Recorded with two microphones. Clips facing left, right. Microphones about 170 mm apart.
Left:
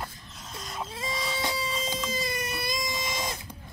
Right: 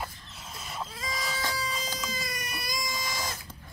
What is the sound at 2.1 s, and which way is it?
Baby cry, 25° left (ahead or behind).